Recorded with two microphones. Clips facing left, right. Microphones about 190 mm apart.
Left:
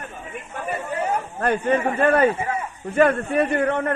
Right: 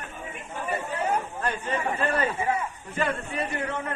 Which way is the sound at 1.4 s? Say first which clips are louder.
Left 8 dB; 60° left (ahead or behind).